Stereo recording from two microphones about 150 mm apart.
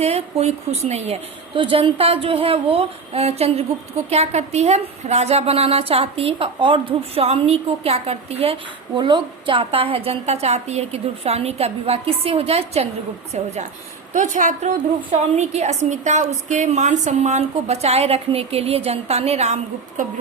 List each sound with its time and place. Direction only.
0.0 s a woman's voice: 45° right (ahead or behind)
9.0 s a woman's voice: 30° right (ahead or behind)